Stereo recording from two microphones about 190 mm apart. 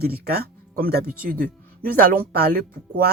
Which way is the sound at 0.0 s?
55° right (ahead or behind).